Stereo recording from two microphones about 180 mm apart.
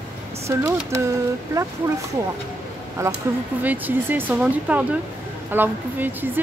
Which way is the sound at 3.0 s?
15° right (ahead or behind).